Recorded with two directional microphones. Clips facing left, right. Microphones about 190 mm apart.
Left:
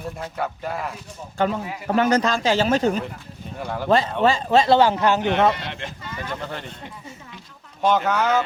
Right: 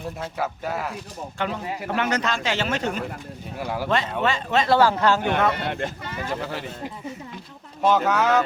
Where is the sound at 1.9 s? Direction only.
35° left (ahead or behind).